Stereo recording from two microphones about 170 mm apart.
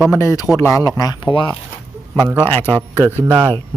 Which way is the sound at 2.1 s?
20° right (ahead or behind).